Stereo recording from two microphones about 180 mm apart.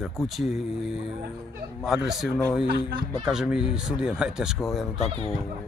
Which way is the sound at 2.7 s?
55° right (ahead or behind).